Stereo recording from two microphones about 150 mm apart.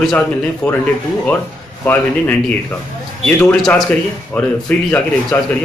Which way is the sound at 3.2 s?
15° left (ahead or behind).